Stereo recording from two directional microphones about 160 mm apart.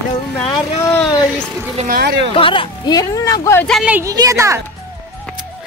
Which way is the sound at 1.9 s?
75° right (ahead or behind).